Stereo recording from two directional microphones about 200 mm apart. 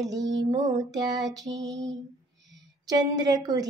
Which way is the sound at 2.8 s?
20° right (ahead or behind).